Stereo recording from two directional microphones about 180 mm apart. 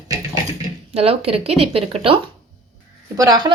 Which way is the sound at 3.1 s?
20° right (ahead or behind).